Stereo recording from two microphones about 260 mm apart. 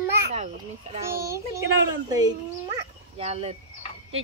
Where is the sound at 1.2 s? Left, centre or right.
Centre.